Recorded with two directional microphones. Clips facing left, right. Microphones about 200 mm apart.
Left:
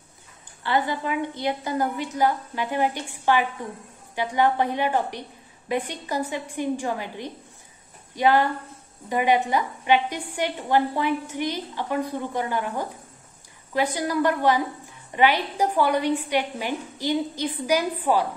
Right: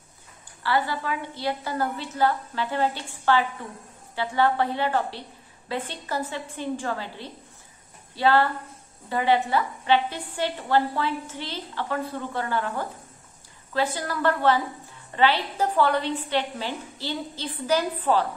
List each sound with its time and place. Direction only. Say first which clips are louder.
0.7 s a woman's voice: left 1 dB; 20° left (ahead or behind)